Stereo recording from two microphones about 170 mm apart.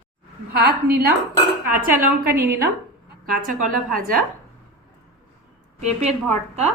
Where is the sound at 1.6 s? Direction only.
55° right (ahead or behind).